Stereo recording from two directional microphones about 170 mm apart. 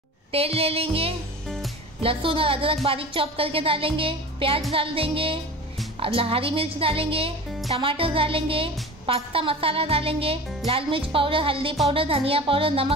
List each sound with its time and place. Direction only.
0.3 s a woman's voice: 35° right (ahead or behind)